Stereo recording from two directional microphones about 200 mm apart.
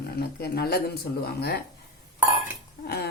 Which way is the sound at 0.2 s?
50° left (ahead or behind).